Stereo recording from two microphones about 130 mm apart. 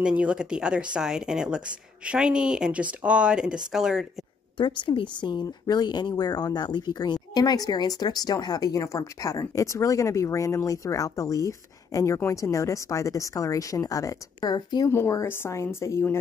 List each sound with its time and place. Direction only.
0.0 s speech: 10° right (ahead or behind)
4.6 s speech: 35° left (ahead or behind)
14.9 s speech: 20° left (ahead or behind)